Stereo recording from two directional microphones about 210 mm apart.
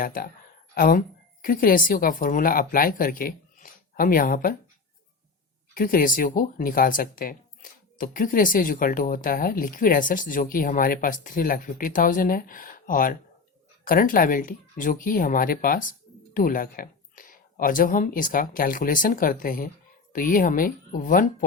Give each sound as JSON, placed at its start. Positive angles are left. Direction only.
{"t": 0.0, "sound": "a woman's voice", "side_deg": 40}
{"t": 5.7, "sound": "speech", "side_deg": 40}